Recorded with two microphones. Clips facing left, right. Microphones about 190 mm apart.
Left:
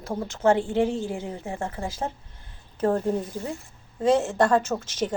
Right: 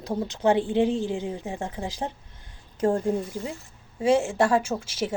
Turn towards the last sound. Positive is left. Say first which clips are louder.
# left 1 dB
turn(degrees=-10)  # may be behind; listen again after turning